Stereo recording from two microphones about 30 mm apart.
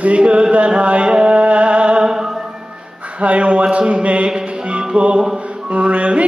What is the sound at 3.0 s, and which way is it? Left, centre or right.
Speech, right.